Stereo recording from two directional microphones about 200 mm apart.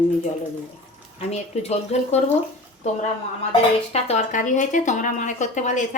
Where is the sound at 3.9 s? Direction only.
35° left (ahead or behind).